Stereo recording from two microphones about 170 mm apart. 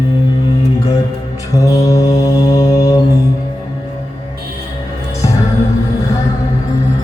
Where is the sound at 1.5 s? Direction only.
20° left (ahead or behind).